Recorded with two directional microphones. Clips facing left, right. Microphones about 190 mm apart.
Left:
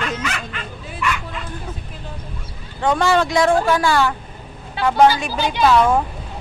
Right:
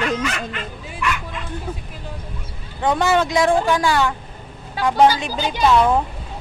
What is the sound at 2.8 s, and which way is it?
Speech, 20° right (ahead or behind).